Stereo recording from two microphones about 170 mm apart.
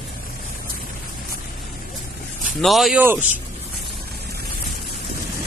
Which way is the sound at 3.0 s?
10° right (ahead or behind).